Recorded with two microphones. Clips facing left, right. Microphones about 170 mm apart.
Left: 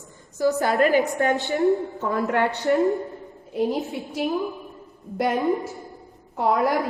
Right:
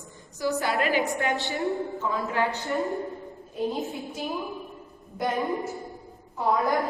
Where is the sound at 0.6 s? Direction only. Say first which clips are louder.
Left 5 dB; 45° left (ahead or behind).